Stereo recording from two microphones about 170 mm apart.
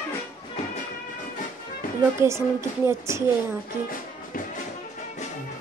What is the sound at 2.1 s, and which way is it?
Speech, 15° right (ahead or behind).